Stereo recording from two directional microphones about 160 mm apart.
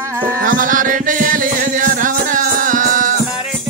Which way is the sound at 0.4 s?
55° right (ahead or behind).